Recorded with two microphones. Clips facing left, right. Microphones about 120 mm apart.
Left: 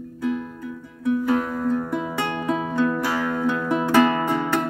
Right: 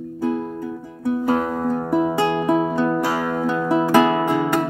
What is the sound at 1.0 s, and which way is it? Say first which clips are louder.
Music: right 1 dB; 35° right (ahead or behind).